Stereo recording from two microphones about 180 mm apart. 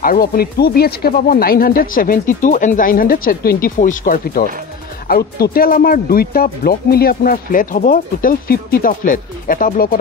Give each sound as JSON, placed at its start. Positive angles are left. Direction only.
{"t": 0.0, "sound": "speech", "side_deg": 55}